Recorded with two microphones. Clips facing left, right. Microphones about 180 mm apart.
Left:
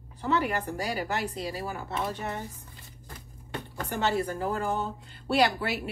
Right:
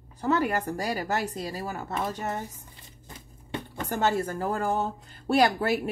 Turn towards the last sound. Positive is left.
turn(degrees=-45)  # may be behind; listen again after turning